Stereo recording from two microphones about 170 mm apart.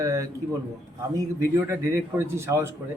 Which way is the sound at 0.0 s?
20° right (ahead or behind).